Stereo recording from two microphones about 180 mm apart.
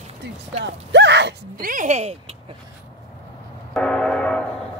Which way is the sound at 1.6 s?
45° right (ahead or behind).